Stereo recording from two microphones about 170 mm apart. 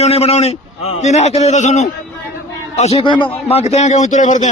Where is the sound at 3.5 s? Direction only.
40° left (ahead or behind).